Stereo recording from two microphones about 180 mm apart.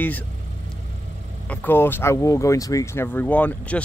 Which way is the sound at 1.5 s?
10° left (ahead or behind).